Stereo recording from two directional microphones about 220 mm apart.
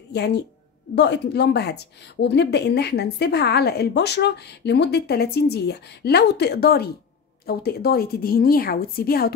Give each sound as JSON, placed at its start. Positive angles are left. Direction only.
{"t": 0.1, "sound": "a woman's voice", "side_deg": 50}